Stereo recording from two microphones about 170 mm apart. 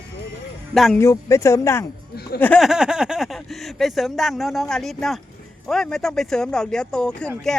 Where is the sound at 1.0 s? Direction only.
15° left (ahead or behind).